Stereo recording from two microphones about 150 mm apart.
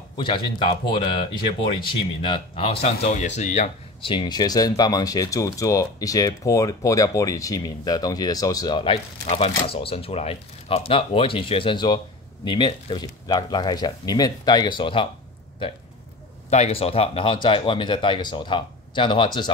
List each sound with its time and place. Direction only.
0.2 s speech: 30° left (ahead or behind); by 3.7 s 50° left (ahead or behind)
4.0 s speech: 35° left (ahead or behind)
16.4 s speech: 45° left (ahead or behind); by 19.5 s 30° left (ahead or behind)